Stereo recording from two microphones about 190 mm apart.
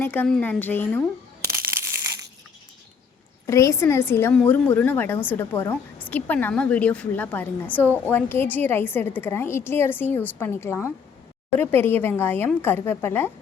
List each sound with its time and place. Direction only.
0.0 s a woman's voice: 10° left (ahead or behind)
1.5 s crumpling: 15° right (ahead or behind)
3.4 s a woman's voice: 15° left (ahead or behind)